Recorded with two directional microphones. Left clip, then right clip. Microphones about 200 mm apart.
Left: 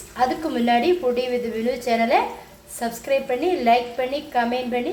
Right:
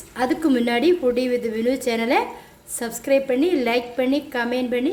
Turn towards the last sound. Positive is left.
turn(degrees=-35)  # may be behind; listen again after turning